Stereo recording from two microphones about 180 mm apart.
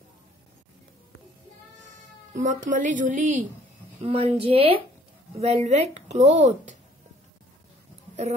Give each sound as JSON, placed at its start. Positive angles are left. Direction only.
{"t": 2.3, "sound": "a woman's voice", "side_deg": -45}
{"t": 4.0, "sound": "speech", "side_deg": -35}